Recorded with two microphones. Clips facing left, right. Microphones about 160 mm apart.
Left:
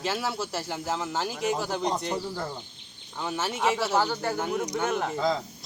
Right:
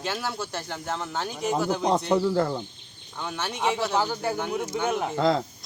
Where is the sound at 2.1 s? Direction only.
70° right (ahead or behind).